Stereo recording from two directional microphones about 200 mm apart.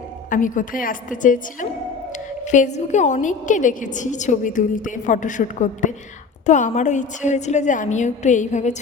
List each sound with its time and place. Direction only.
0.3 s a woman's voice: 40° left (ahead or behind)
2.5 s a woman's voice: 35° left (ahead or behind)